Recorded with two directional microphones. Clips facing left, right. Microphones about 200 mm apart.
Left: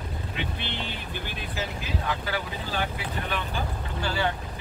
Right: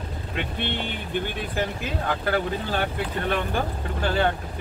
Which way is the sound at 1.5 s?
55° right (ahead or behind).